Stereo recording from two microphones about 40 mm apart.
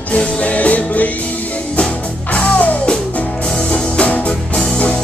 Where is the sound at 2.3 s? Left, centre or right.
Left.